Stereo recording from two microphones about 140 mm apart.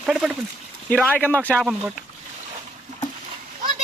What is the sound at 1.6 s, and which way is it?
Speech, 5° right (ahead or behind).